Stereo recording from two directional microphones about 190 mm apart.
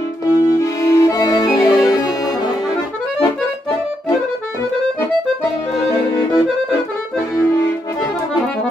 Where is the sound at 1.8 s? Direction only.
20° left (ahead or behind).